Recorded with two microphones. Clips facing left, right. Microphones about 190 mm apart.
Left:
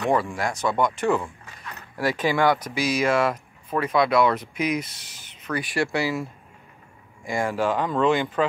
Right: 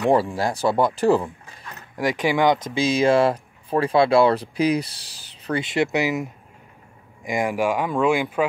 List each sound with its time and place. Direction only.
0.1 s speech: 30° right (ahead or behind)
2.0 s speech: 15° right (ahead or behind)